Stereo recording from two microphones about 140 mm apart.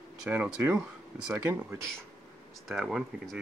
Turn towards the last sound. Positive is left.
turn(degrees=0)  # may be behind; listen again after turning